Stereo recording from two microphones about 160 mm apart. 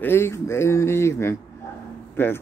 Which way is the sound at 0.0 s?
15° left (ahead or behind).